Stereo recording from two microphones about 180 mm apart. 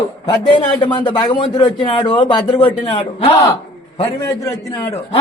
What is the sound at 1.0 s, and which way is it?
Speech, 25° left (ahead or behind).